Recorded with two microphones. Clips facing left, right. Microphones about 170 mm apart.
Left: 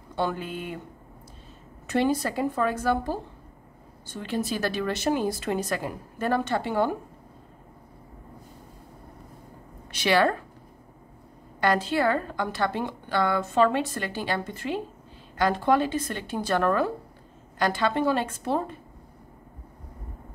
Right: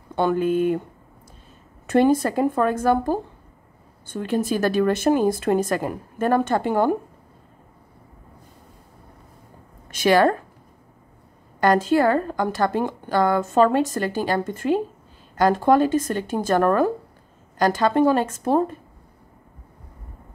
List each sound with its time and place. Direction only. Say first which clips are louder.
0.1 s a woman's voice: right 9 dB; 55° right (ahead or behind)
1.9 s a woman's voice: right 7 dB; 50° right (ahead or behind)
9.8 s a woman's voice: right 5 dB; 45° right (ahead or behind)
11.6 s a woman's voice: right 6 dB; 45° right (ahead or behind)